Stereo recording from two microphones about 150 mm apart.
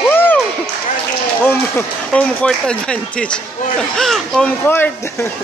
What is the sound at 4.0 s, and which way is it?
Speech, 5° left (ahead or behind).